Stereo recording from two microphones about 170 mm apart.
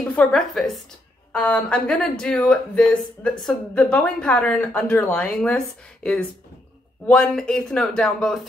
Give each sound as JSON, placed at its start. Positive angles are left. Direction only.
{"t": 0.1, "sound": "speech", "side_deg": 5}
{"t": 7.1, "sound": "speech", "side_deg": 5}